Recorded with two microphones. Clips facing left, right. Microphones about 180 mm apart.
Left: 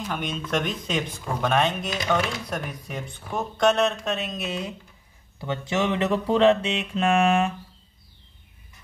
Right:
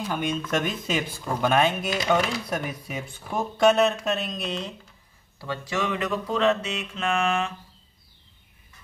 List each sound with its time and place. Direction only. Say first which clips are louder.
0.5 s speech: even; 5° right (ahead or behind)
5.4 s music: left 3 dB; 20° left (ahead or behind)